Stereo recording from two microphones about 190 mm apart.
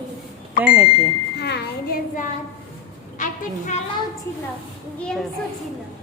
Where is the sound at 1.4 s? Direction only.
60° left (ahead or behind).